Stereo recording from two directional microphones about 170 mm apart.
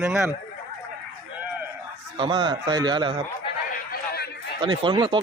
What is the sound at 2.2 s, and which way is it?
A man's voice, 25° right (ahead or behind).